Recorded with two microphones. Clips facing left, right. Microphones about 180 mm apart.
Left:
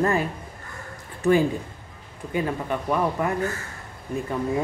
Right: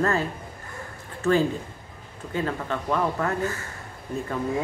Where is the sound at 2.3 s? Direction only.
15° left (ahead or behind).